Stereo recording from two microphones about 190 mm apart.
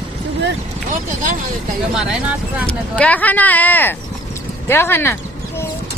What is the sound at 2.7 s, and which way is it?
Speech, 5° left (ahead or behind).